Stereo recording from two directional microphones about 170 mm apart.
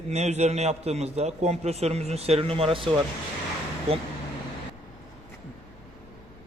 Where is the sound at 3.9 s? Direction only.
35° right (ahead or behind).